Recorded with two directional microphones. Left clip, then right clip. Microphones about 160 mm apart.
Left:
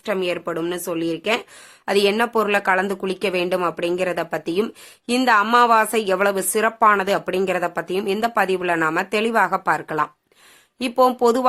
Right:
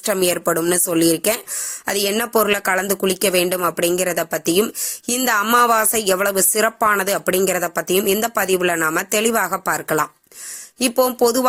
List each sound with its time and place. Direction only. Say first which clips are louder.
0.0 s speech: right 4 dB; 40° right (ahead or behind)
1.9 s speech: left 1 dB; 25° right (ahead or behind)